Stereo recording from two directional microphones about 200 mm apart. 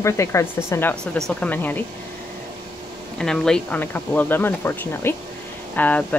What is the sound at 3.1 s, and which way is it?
Speech, 5° left (ahead or behind).